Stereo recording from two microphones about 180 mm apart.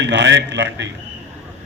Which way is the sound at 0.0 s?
75° right (ahead or behind).